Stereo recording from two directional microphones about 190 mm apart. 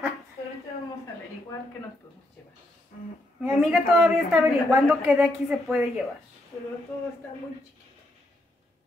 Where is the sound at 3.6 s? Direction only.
Centre (ahead or behind).